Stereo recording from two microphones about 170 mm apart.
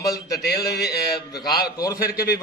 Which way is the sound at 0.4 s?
70° left (ahead or behind).